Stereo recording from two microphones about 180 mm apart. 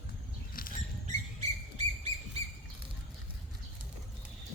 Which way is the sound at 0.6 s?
50° left (ahead or behind).